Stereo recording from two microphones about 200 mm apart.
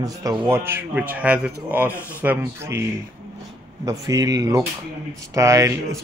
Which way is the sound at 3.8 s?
15° right (ahead or behind).